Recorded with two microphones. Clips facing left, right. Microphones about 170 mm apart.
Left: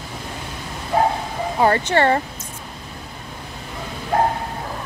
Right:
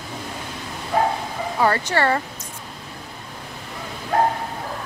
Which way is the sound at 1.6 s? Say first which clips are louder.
Left 3 dB; 25° left (ahead or behind).